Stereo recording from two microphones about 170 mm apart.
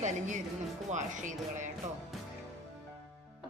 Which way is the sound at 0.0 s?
45° right (ahead or behind).